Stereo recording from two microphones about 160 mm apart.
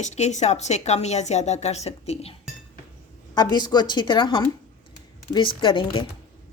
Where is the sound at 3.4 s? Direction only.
25° left (ahead or behind).